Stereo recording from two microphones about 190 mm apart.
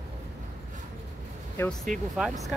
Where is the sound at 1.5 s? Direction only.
5° left (ahead or behind).